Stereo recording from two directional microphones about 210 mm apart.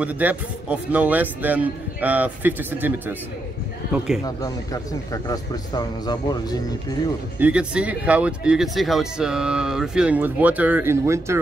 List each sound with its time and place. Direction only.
0.0 s speech: 5° right (ahead or behind)
4.4 s speech: 15° left (ahead or behind)
7.3 s speech: 5° right (ahead or behind)